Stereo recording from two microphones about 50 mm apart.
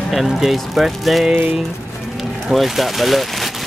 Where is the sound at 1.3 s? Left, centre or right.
Right.